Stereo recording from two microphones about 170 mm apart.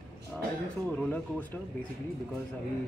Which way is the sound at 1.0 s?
10° left (ahead or behind).